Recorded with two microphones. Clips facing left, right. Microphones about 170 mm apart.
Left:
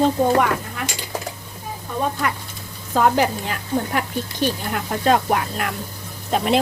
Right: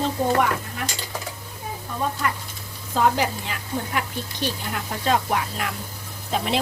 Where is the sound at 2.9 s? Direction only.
50° left (ahead or behind).